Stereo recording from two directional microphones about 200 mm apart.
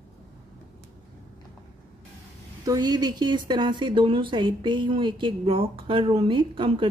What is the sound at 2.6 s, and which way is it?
Speech, 20° right (ahead or behind).